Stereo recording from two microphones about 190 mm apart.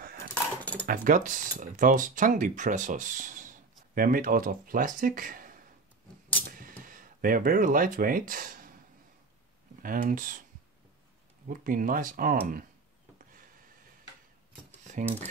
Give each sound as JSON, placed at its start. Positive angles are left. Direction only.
{"t": 0.6, "sound": "cutlery", "side_deg": 10}
{"t": 0.8, "sound": "speech", "side_deg": -45}
{"t": 6.8, "sound": "speech", "side_deg": -45}
{"t": 9.8, "sound": "speech", "side_deg": -45}
{"t": 11.4, "sound": "speech", "side_deg": -45}
{"t": 13.2, "sound": "a sound", "side_deg": -45}